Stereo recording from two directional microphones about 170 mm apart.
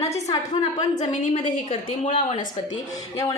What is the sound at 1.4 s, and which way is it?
A woman's voice, 35° left (ahead or behind).